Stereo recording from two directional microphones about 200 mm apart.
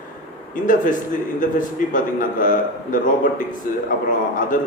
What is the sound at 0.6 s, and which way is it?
A man's voice, 40° left (ahead or behind).